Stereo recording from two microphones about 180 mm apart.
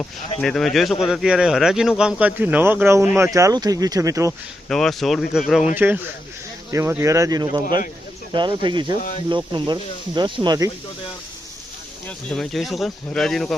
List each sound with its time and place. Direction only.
0.3 s speech: centre (ahead or behind); by 4.4 s 15° right (ahead or behind)
4.7 s speech: centre (ahead or behind); by 10.7 s 25° right (ahead or behind)
12.0 s speech: 5° left (ahead or behind)